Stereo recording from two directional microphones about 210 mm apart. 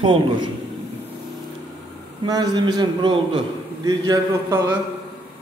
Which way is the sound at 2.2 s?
20° right (ahead or behind).